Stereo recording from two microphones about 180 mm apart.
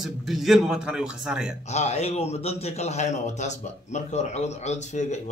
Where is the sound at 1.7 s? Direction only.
40° left (ahead or behind).